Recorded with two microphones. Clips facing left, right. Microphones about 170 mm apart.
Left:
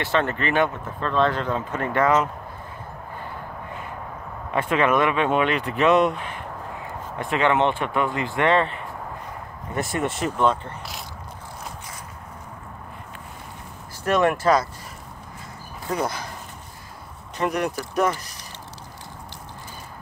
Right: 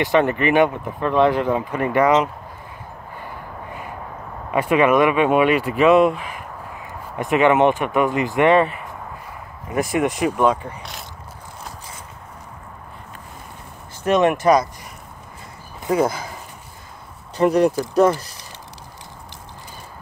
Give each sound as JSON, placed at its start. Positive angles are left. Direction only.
{"t": 0.0, "sound": "speech", "side_deg": -15}
{"t": 4.5, "sound": "speech", "side_deg": -10}
{"t": 9.8, "sound": "speech", "side_deg": -15}
{"t": 14.0, "sound": "speech", "side_deg": -20}
{"t": 17.4, "sound": "speech", "side_deg": -30}